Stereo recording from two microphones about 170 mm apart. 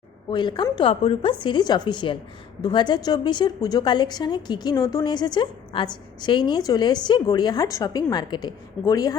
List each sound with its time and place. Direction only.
0.3 s a woman's voice: 25° left (ahead or behind)